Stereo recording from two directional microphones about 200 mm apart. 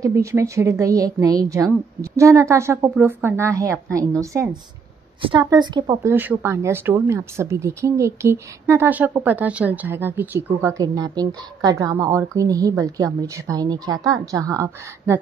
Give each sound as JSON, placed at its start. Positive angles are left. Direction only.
{"t": 0.0, "sound": "speech", "side_deg": -15}
{"t": 6.1, "sound": "speech", "side_deg": -10}